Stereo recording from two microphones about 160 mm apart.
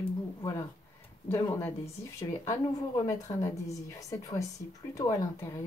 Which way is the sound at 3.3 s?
20° left (ahead or behind).